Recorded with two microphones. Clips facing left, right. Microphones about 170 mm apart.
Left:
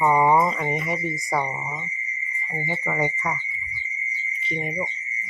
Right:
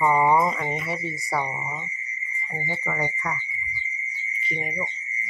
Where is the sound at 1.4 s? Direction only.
Centre (ahead or behind).